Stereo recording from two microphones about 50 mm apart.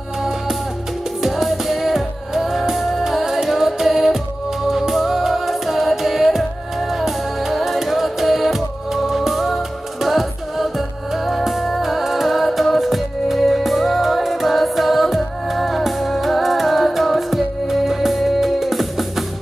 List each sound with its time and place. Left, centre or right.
1.2 s music: centre